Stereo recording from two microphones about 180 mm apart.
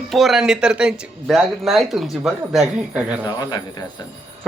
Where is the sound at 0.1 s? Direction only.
Centre (ahead or behind).